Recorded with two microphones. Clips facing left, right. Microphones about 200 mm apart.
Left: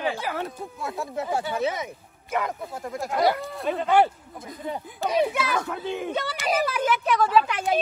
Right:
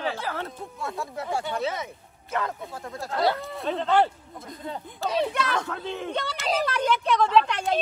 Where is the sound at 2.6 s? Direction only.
Centre (ahead or behind).